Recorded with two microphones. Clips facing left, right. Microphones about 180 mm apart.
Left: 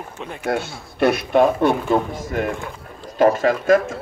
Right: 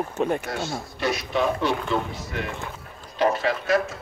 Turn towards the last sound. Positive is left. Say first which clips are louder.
# left 7 dB
turn(degrees=50)  # may be behind; listen again after turning